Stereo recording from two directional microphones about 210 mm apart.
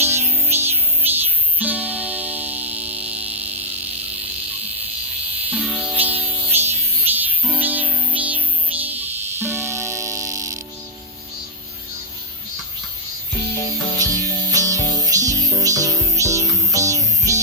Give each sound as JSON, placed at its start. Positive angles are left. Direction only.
{"t": 0.0, "sound": "music", "side_deg": -10}
{"t": 5.5, "sound": "music", "side_deg": -5}
{"t": 14.0, "sound": "music", "side_deg": -15}